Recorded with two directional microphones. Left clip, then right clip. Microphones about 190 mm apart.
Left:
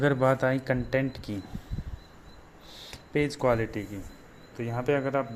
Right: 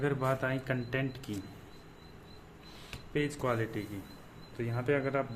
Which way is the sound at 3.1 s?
30° left (ahead or behind).